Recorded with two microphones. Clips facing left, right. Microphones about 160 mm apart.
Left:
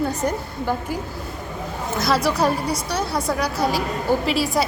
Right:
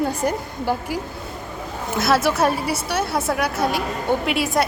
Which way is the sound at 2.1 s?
5° right (ahead or behind).